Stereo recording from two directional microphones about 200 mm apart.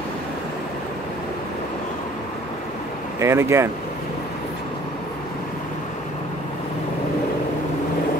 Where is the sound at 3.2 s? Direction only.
15° right (ahead or behind).